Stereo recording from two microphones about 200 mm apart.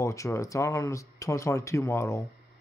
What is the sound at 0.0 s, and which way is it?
Speech, 15° left (ahead or behind).